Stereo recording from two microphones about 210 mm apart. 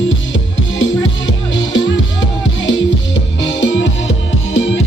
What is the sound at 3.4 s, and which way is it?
Music, 65° left (ahead or behind).